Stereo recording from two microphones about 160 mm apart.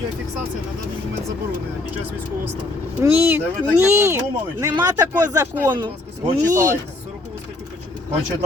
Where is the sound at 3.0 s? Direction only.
15° right (ahead or behind).